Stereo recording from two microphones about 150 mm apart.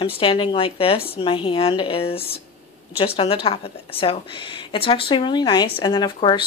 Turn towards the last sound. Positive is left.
turn(degrees=30)  # may be behind; listen again after turning